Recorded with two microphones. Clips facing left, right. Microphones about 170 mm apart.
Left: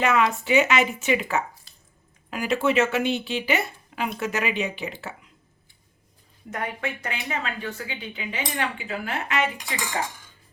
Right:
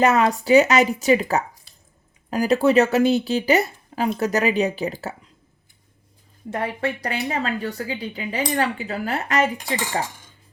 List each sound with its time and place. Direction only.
0.0 s speech: 40° right (ahead or behind)
6.5 s speech: 30° right (ahead or behind)